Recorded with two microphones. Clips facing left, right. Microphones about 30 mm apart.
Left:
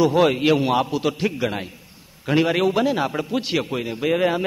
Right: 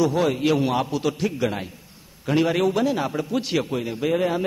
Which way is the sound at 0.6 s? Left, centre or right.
Left.